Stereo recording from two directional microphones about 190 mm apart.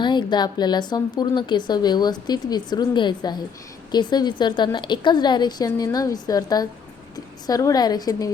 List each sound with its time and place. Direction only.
0.0 s speech: 25° left (ahead or behind)